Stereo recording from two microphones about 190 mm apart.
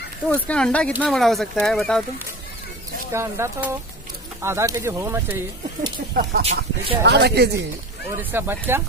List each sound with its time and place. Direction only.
0.3 s speech: 5° left (ahead or behind)
3.1 s speech: 15° right (ahead or behind)
6.4 s speech: 30° right (ahead or behind)
7.1 s speech: 60° right (ahead or behind)
8.2 s speech: 10° right (ahead or behind)